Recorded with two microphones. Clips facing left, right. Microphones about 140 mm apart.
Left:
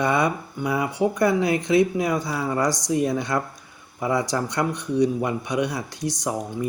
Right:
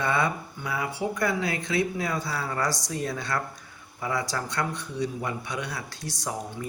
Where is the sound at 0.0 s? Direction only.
15° left (ahead or behind).